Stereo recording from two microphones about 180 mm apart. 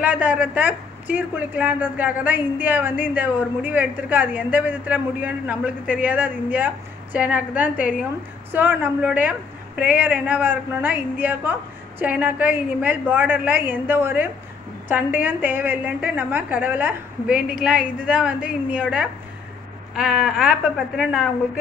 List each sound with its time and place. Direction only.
0.0 s a woman's voice: 10° right (ahead or behind)